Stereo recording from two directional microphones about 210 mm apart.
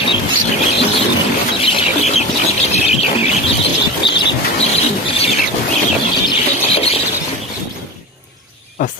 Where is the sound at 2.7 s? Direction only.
30° left (ahead or behind).